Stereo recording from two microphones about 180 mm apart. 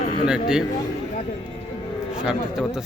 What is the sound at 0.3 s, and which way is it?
Speech, 5° right (ahead or behind).